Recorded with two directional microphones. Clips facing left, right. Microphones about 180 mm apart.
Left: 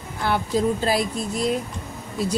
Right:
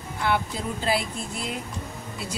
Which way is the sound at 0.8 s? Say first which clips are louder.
Left 4 dB; 40° left (ahead or behind).